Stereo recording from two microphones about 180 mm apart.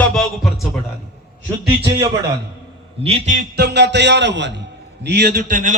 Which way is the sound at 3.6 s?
70° right (ahead or behind).